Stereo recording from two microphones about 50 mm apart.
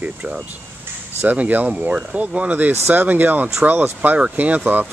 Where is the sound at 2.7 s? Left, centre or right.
Right.